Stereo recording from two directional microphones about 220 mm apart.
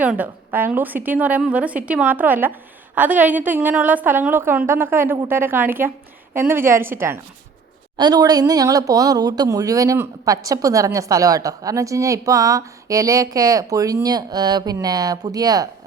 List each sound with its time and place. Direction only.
0.0 s speech: 5° right (ahead or behind)